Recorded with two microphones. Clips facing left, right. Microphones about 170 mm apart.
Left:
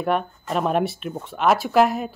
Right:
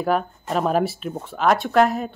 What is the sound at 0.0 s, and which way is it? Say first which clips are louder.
Speech: right 1 dB; centre (ahead or behind).